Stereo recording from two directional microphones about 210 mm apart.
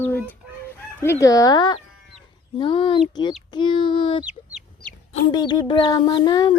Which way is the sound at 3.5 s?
20° left (ahead or behind).